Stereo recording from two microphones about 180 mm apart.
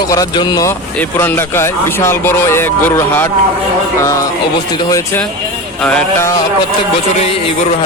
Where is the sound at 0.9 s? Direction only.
10° left (ahead or behind).